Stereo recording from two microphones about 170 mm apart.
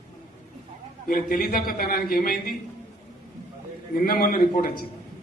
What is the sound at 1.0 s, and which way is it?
A man's voice, 55° left (ahead or behind).